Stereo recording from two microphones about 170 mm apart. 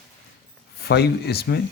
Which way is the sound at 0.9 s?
70° left (ahead or behind).